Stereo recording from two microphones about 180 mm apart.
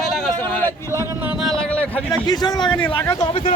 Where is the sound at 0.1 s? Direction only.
5° left (ahead or behind).